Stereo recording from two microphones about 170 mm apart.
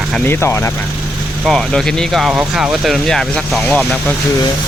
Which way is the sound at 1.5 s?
Centre (ahead or behind).